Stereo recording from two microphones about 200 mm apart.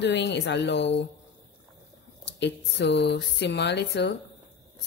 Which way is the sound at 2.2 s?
60° left (ahead or behind).